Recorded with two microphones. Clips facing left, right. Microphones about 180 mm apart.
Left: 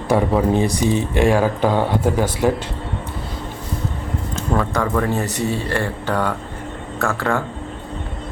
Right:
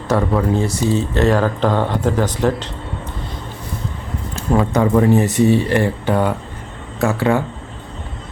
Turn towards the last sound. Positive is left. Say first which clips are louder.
# right 4 dB
turn(degrees=-20)  # may be behind; listen again after turning